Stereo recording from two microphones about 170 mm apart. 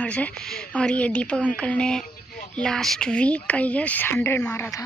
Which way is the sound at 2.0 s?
55° left (ahead or behind).